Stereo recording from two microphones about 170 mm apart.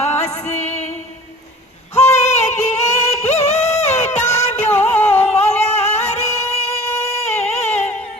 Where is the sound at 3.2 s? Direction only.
40° left (ahead or behind).